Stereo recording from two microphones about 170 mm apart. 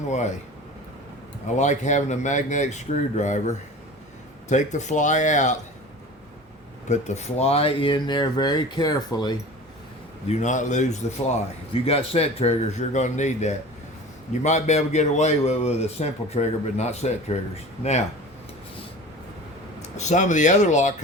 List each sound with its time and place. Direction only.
0.1 s speech: 45° left (ahead or behind)
1.5 s speech: 45° left (ahead or behind)
6.8 s speech: 40° left (ahead or behind); by 9.4 s 25° left (ahead or behind)
10.2 s speech: 45° left (ahead or behind)
19.8 s speech: 45° left (ahead or behind)